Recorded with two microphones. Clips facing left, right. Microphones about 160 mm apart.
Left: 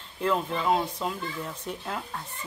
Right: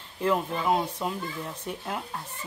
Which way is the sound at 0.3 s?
10° right (ahead or behind).